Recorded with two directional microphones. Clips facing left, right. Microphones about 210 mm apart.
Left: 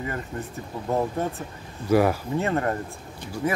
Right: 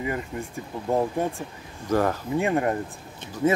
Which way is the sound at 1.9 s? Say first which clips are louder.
Left 3 dB; 10° left (ahead or behind).